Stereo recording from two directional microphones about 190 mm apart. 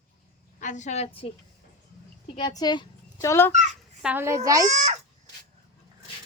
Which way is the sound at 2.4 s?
20° left (ahead or behind).